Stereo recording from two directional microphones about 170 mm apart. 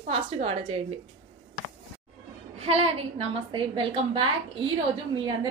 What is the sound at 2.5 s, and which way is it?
A woman's voice, 35° right (ahead or behind).